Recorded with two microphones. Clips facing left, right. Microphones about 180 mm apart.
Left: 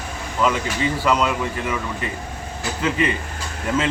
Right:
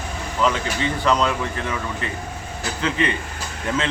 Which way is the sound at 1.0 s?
10° left (ahead or behind).